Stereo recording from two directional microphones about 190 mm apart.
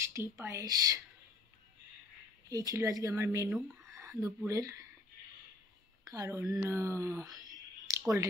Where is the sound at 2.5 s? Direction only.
20° right (ahead or behind).